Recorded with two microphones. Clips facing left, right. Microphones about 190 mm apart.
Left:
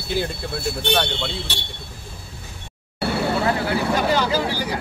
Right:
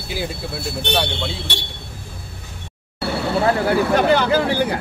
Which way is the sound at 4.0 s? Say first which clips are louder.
Right 4 dB; 60° right (ahead or behind).